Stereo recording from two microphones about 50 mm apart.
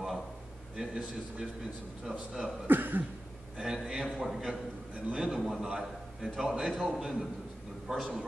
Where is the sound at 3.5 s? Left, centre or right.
Centre.